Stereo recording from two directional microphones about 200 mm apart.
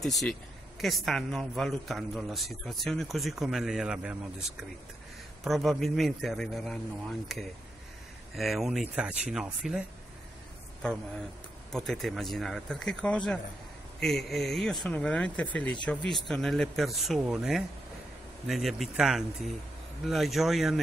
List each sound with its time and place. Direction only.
0.0 s speech: centre (ahead or behind)
11.7 s speech: centre (ahead or behind)